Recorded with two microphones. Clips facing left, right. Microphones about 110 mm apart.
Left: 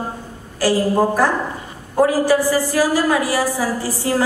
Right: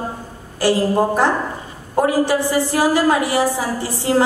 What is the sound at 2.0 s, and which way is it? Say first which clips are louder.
A woman's voice: left 2 dB; 25° right (ahead or behind).